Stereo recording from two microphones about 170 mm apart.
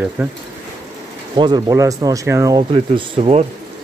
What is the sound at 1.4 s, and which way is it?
Speech, 25° right (ahead or behind).